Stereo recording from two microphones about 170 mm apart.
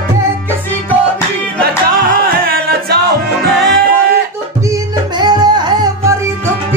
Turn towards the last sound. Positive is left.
turn(degrees=-25)  # may be behind; listen again after turning